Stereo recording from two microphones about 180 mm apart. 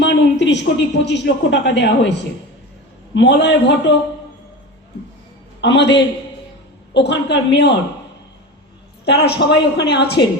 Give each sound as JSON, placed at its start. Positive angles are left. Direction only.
{"t": 0.0, "sound": "speech", "side_deg": 75}
{"t": 3.2, "sound": "a woman's voice", "side_deg": 75}
{"t": 5.5, "sound": "a woman's voice", "side_deg": 75}
{"t": 9.0, "sound": "a woman's voice", "side_deg": 65}